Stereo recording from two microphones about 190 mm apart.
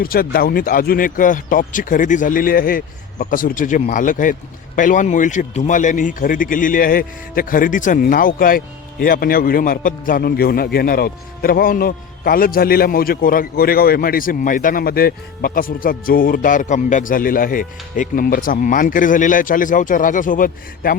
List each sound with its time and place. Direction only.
0.0 s speech: 50° left (ahead or behind)